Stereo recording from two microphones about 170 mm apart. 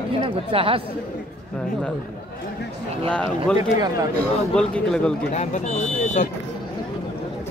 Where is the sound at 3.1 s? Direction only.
5° left (ahead or behind).